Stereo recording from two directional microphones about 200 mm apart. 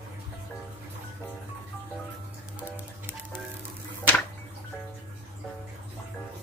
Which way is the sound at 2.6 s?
10° right (ahead or behind).